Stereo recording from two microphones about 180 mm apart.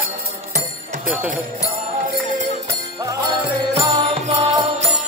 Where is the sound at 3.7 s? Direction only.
30° right (ahead or behind).